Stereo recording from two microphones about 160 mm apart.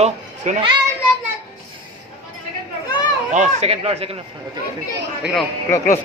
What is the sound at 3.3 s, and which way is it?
Speech, 45° right (ahead or behind).